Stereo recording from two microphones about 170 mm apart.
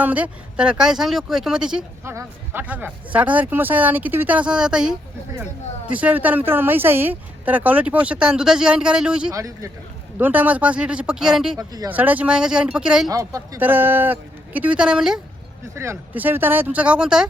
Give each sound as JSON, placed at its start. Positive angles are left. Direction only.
{"t": 0.0, "sound": "speech", "side_deg": -10}
{"t": 9.3, "sound": "a man's voice", "side_deg": -20}
{"t": 11.5, "sound": "a man's voice", "side_deg": -20}
{"t": 11.9, "sound": "speech", "side_deg": -10}
{"t": 13.1, "sound": "speech", "side_deg": -20}
{"t": 15.7, "sound": "speech", "side_deg": -15}